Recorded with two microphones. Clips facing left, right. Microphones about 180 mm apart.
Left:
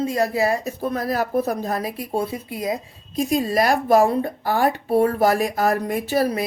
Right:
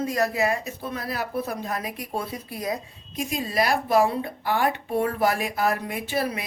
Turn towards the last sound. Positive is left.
turn(degrees=40)  # may be behind; listen again after turning